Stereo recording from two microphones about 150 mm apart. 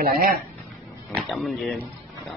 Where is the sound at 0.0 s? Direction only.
75° right (ahead or behind).